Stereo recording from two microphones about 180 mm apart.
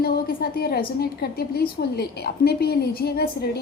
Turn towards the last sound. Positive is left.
turn(degrees=60)  # may be behind; listen again after turning